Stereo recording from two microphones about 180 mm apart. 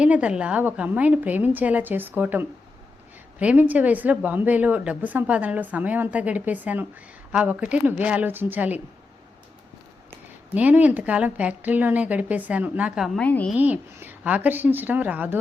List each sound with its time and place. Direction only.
0.0 s a woman's voice: 5° right (ahead or behind)
10.5 s a woman's voice: 10° right (ahead or behind); by 13.5 s 10° left (ahead or behind)
13.6 s a woman's voice: 10° right (ahead or behind)